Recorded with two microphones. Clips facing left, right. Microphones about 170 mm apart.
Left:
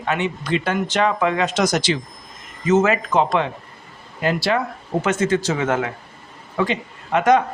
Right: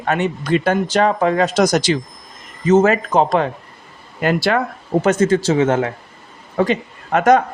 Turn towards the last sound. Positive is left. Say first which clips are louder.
# right 3 dB
turn(degrees=-45)  # may be behind; listen again after turning